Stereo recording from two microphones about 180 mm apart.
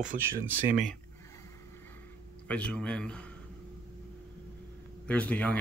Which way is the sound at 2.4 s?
5° left (ahead or behind).